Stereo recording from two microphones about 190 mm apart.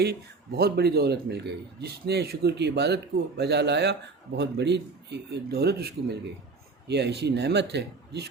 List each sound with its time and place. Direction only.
0.0 s a man's voice: 55° right (ahead or behind)